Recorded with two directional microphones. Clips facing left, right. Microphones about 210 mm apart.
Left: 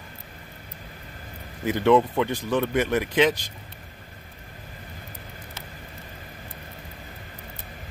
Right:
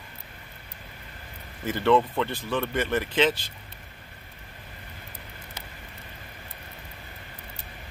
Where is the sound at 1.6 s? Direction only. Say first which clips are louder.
Left 3 dB; 15° left (ahead or behind).